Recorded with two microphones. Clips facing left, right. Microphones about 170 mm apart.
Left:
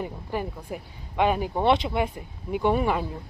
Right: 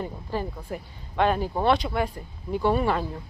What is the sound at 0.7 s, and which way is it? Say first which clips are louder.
Speech: right 1 dB; 10° left (ahead or behind).